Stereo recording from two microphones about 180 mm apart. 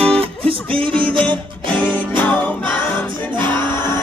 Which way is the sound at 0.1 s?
30° right (ahead or behind).